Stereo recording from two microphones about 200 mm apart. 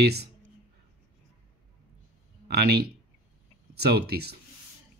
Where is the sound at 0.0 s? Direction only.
55° right (ahead or behind).